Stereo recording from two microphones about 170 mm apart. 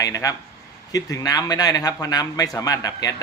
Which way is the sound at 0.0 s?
20° left (ahead or behind).